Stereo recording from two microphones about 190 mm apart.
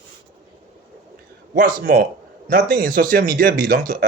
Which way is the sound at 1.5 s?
50° right (ahead or behind).